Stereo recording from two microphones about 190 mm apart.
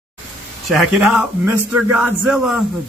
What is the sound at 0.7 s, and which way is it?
A man's voice, 5° right (ahead or behind).